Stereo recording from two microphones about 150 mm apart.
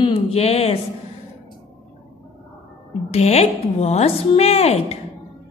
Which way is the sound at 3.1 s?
45° left (ahead or behind).